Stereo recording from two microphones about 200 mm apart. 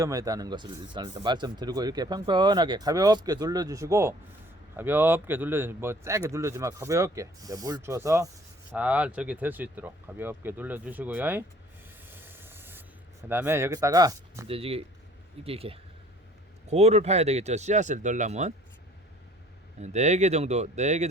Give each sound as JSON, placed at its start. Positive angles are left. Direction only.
{"t": 0.0, "sound": "a man's voice", "side_deg": -15}
{"t": 12.0, "sound": "a sound", "side_deg": -10}
{"t": 13.2, "sound": "a man's voice", "side_deg": -10}
{"t": 14.4, "sound": "speech", "side_deg": -30}
{"t": 19.8, "sound": "speech", "side_deg": -35}